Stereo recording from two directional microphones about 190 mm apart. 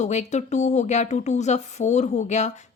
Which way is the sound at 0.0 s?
35° left (ahead or behind).